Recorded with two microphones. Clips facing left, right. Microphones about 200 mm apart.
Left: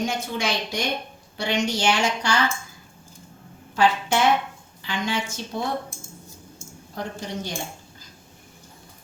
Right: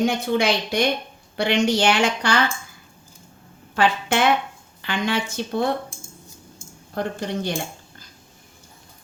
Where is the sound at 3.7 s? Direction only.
60° right (ahead or behind).